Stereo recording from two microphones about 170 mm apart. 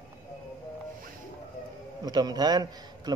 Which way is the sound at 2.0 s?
25° right (ahead or behind).